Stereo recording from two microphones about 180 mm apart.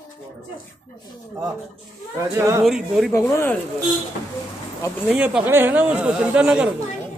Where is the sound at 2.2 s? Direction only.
15° right (ahead or behind).